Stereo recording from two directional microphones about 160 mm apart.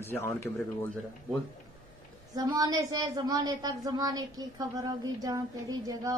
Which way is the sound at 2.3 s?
25° right (ahead or behind).